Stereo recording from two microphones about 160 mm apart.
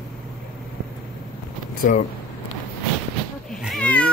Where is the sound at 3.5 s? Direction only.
Centre (ahead or behind).